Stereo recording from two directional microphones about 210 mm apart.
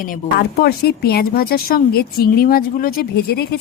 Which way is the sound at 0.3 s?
45° left (ahead or behind).